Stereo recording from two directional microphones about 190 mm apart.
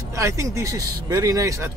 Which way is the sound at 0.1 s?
15° right (ahead or behind).